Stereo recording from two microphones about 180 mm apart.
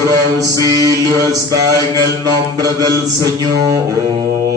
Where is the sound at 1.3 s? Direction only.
20° right (ahead or behind).